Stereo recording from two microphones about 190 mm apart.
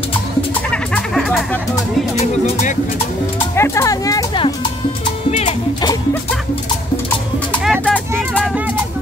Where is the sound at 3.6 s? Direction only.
15° left (ahead or behind).